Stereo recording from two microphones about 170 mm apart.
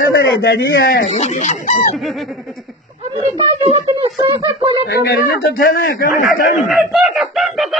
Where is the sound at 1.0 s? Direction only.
45° left (ahead or behind).